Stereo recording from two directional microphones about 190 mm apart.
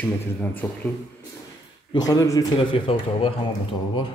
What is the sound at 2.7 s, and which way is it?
Speech, 30° left (ahead or behind).